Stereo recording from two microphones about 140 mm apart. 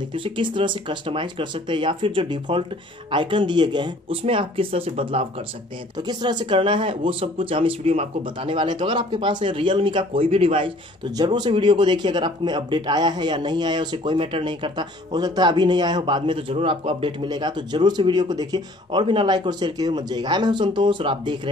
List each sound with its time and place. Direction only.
0.1 s speech: 35° right (ahead or behind)
11.1 s speech: 30° right (ahead or behind)